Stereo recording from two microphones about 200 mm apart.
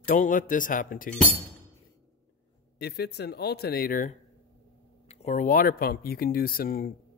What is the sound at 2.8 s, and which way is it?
Speech, 55° left (ahead or behind).